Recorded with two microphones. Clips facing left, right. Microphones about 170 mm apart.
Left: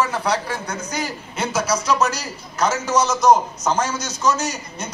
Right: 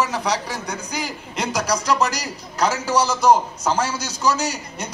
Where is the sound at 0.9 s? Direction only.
10° right (ahead or behind).